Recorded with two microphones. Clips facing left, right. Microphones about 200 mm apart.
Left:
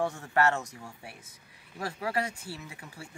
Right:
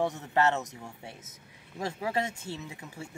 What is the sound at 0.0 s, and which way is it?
Speech, 20° right (ahead or behind).